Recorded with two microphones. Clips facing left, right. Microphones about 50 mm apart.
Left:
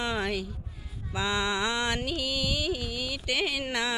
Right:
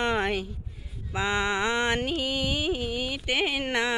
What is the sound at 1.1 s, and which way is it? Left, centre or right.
Mantra, right.